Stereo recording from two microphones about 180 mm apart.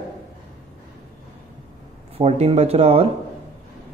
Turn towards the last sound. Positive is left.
turn(degrees=-35)  # may be behind; listen again after turning